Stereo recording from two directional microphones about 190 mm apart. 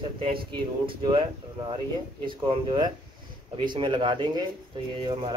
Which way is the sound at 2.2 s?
25° right (ahead or behind).